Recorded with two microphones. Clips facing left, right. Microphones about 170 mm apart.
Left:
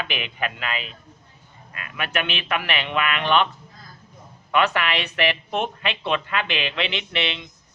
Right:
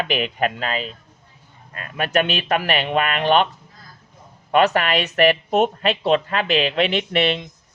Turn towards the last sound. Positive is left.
turn(degrees=-45)  # may be behind; listen again after turning